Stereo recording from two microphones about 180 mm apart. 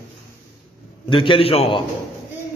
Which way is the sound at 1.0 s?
30° left (ahead or behind).